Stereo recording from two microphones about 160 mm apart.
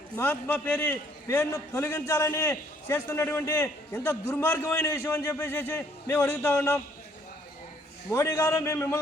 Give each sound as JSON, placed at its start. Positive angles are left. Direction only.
{"t": 0.2, "sound": "a man's voice", "side_deg": 10}
{"t": 8.1, "sound": "a man's voice", "side_deg": 20}